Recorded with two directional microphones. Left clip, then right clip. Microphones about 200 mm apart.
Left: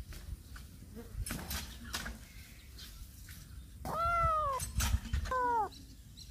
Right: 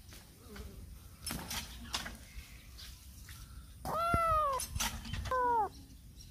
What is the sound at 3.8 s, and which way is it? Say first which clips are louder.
Cat: even; 10° right (ahead or behind).